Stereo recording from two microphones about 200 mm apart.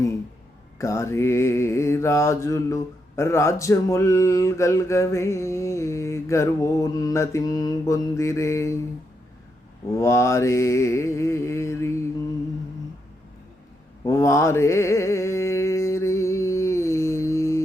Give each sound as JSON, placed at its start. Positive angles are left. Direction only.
{"t": 0.8, "sound": "mantra", "side_deg": 15}
{"t": 9.9, "sound": "mantra", "side_deg": 15}
{"t": 14.0, "sound": "mantra", "side_deg": 15}